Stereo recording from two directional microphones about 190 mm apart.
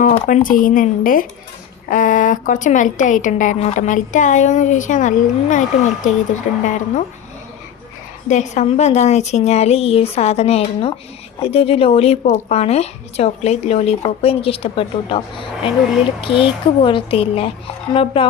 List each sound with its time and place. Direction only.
0.3 s a woman's voice: 45° left (ahead or behind)
8.3 s a woman's voice: 40° left (ahead or behind)